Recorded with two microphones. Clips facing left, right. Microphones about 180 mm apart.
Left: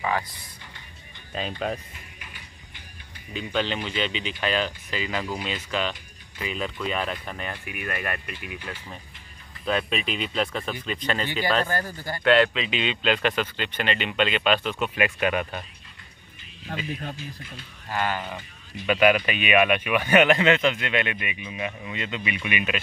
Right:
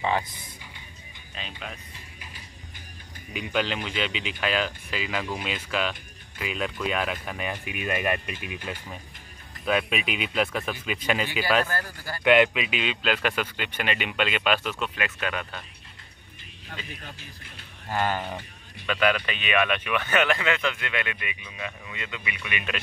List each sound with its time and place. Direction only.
1.6 s speech: 40° left (ahead or behind)
3.3 s speech: 5° right (ahead or behind)
9.7 s speech: 5° right (ahead or behind)
11.6 s speech: 20° left (ahead or behind)
12.2 s speech: 15° right (ahead or behind)
15.0 s speech: 15° left (ahead or behind)
18.1 s speech: 20° right (ahead or behind)
18.9 s speech: 15° left (ahead or behind)